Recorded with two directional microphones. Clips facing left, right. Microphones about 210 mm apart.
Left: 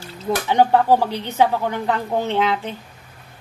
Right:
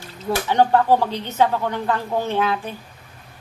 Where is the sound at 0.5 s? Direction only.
15° left (ahead or behind).